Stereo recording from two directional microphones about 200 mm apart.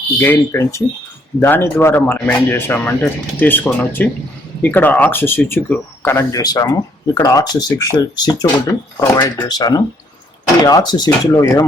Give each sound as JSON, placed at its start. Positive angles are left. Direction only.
{"t": 0.2, "sound": "speech", "side_deg": 10}